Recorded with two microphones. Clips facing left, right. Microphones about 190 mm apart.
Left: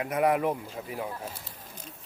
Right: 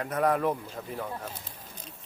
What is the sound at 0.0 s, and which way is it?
A man's voice, 10° left (ahead or behind).